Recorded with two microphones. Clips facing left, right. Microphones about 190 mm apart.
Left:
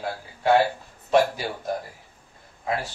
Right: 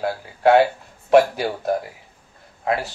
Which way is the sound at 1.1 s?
65° right (ahead or behind).